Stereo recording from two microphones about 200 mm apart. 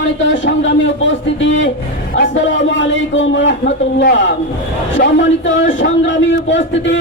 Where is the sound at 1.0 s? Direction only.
70° left (ahead or behind).